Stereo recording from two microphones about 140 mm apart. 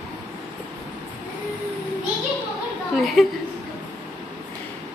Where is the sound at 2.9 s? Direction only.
Centre (ahead or behind).